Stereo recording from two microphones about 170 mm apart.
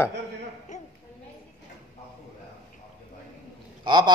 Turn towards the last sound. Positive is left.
turn(degrees=-25)  # may be behind; listen again after turning